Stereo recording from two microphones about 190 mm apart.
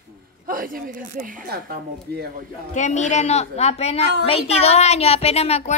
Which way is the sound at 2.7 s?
40° left (ahead or behind).